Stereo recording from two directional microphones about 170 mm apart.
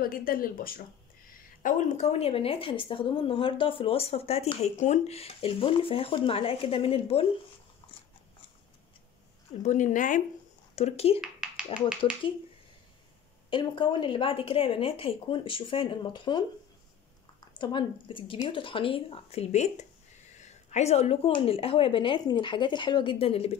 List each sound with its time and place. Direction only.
0.0 s a woman's voice: 55° left (ahead or behind); by 7.2 s 35° left (ahead or behind)
9.6 s speech: 45° left (ahead or behind)
10.8 s a woman's voice: 40° left (ahead or behind)
11.1 s a sound: 5° right (ahead or behind)
12.0 s a woman's voice: 30° left (ahead or behind)
13.5 s a woman's voice: 30° left (ahead or behind)
17.6 s a woman's voice: 30° left (ahead or behind)